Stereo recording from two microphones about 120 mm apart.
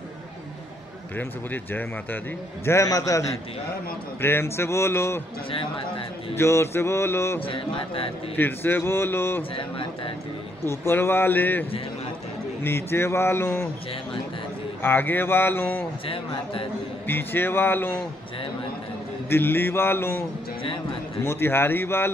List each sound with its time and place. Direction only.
1.1 s speech: 15° left (ahead or behind)
2.6 s mantra: 25° left (ahead or behind)
5.5 s a man's voice: 45° left (ahead or behind)
6.3 s mantra: 20° left (ahead or behind)
7.4 s a man's voice: 50° left (ahead or behind)
8.4 s mantra: 15° left (ahead or behind)
9.6 s a man's voice: 45° left (ahead or behind)
10.6 s mantra: 20° left (ahead or behind)
12.6 s mantra: 20° left (ahead or behind)
14.8 s speech: 15° left (ahead or behind)
17.1 s speech: 20° left (ahead or behind)
19.2 s mantra: 20° left (ahead or behind)